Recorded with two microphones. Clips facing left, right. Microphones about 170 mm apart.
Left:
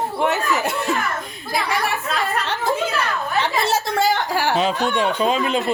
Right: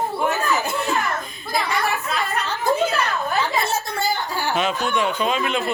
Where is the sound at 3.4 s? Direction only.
90° left.